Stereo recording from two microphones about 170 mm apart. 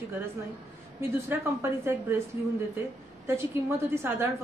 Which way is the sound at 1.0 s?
15° right (ahead or behind).